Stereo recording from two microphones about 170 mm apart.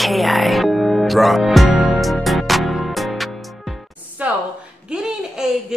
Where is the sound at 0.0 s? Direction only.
Centre (ahead or behind).